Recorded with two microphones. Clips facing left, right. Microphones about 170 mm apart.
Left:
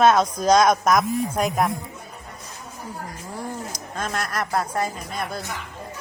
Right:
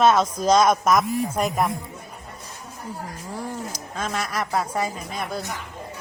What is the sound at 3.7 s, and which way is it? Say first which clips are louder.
Speech: even; 5° right (ahead or behind).